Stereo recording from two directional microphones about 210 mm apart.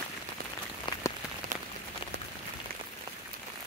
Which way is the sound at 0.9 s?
25° left (ahead or behind).